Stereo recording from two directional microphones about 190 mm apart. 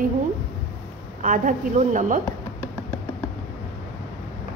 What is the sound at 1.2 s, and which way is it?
A woman's voice, 45° right (ahead or behind).